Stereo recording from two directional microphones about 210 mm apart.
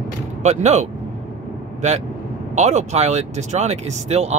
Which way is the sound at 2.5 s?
35° right (ahead or behind).